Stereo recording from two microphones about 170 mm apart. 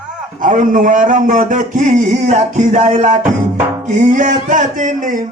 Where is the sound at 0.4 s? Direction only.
50° right (ahead or behind).